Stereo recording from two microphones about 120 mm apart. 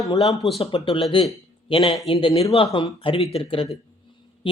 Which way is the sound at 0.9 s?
50° left (ahead or behind).